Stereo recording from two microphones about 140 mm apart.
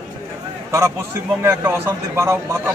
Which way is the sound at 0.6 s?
20° right (ahead or behind).